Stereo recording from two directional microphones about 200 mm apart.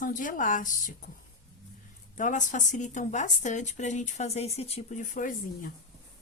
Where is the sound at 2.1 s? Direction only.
40° left (ahead or behind).